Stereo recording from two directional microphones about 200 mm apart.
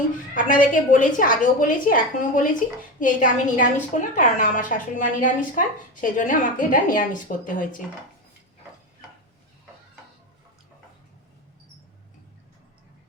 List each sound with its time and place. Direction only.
0.3 s speech: 40° left (ahead or behind)